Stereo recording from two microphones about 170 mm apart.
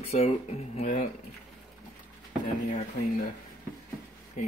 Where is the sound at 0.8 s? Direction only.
50° left (ahead or behind).